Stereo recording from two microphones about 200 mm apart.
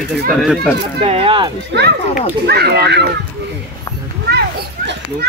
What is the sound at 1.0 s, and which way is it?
Speech, 30° right (ahead or behind).